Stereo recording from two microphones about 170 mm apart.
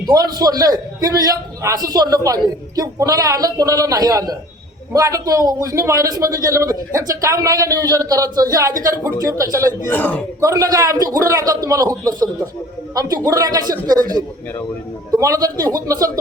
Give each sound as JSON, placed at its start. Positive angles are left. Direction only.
{"t": 0.1, "sound": "a man's voice", "side_deg": -20}
{"t": 9.9, "sound": "a man's voice", "side_deg": 10}
{"t": 10.4, "sound": "a man's voice", "side_deg": -20}
{"t": 15.2, "sound": "a man's voice", "side_deg": -20}